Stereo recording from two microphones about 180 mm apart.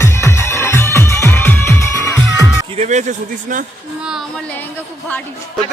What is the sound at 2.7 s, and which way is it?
Speech, 40° right (ahead or behind).